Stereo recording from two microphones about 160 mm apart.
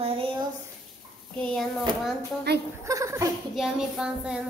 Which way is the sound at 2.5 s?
90° right.